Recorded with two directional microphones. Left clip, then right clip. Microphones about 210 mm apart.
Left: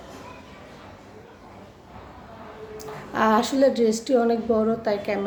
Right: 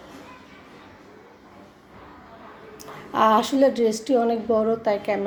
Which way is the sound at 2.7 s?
15° right (ahead or behind).